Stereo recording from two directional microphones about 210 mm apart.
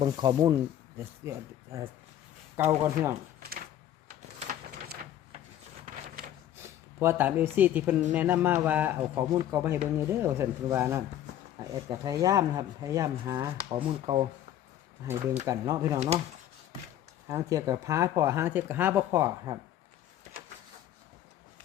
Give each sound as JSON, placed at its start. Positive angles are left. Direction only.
{"t": 0.0, "sound": "a man's voice", "side_deg": -20}
{"t": 4.1, "sound": "printer", "side_deg": -35}
{"t": 5.8, "sound": "a sound", "side_deg": -35}
{"t": 6.6, "sound": "a man's voice", "side_deg": -10}
{"t": 15.0, "sound": "a man's voice", "side_deg": -10}
{"t": 16.0, "sound": "speech", "side_deg": -30}
{"t": 17.2, "sound": "a man's voice", "side_deg": -15}